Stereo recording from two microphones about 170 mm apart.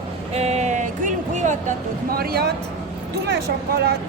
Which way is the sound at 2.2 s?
65° right (ahead or behind).